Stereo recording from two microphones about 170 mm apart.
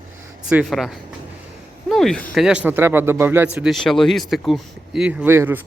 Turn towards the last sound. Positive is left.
turn(degrees=-15)  # may be behind; listen again after turning